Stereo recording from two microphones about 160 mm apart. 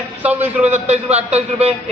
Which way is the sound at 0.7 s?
45° right (ahead or behind).